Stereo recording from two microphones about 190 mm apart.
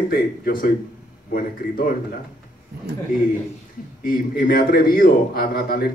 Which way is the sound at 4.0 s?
50° left (ahead or behind).